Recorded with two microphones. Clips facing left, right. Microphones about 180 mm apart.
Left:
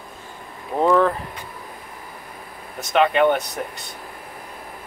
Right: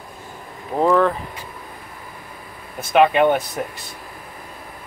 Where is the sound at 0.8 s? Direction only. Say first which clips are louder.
Right 1 dB; centre (ahead or behind).